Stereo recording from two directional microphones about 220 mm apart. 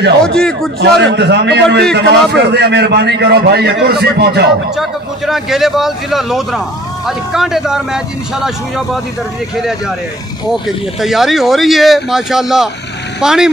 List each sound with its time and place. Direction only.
0.2 s speech: 5° left (ahead or behind)
1.0 s a man's voice: 50° right (ahead or behind)
4.7 s speech: centre (ahead or behind)